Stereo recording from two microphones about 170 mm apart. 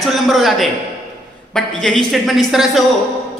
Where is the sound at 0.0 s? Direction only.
Centre (ahead or behind).